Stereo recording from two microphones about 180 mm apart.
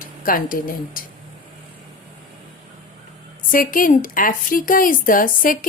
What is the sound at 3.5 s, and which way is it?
A woman's voice, 50° left (ahead or behind).